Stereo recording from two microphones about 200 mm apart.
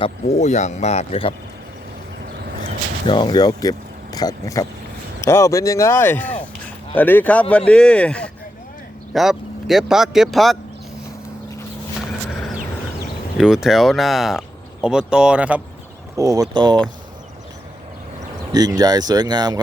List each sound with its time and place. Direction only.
0.0 s speech: 35° left (ahead or behind)
3.1 s speech: 20° left (ahead or behind); by 10.6 s centre (ahead or behind)
13.4 s speech: 5° right (ahead or behind)
16.1 s speech: 15° right (ahead or behind)
18.5 s speech: 20° right (ahead or behind)